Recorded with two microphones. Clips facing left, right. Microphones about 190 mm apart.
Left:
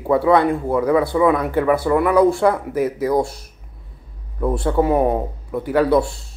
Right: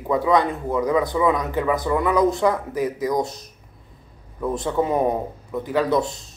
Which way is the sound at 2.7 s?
15° right (ahead or behind).